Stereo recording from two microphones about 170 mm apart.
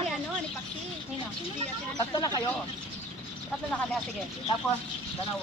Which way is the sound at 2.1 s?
20° left (ahead or behind).